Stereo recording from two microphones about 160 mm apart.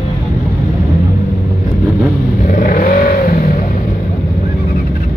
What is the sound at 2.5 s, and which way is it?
Vehicle, 60° left (ahead or behind).